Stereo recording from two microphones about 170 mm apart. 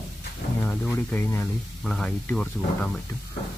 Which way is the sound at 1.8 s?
Centre (ahead or behind).